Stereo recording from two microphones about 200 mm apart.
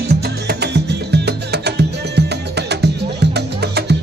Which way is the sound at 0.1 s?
55° right (ahead or behind).